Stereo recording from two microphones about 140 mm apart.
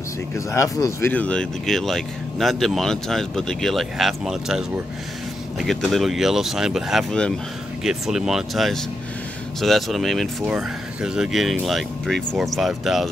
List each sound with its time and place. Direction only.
0.5 s speech: 20° left (ahead or behind)
1.1 s speech: 10° left (ahead or behind)